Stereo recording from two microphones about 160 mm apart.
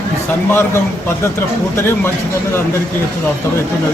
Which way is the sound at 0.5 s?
15° left (ahead or behind).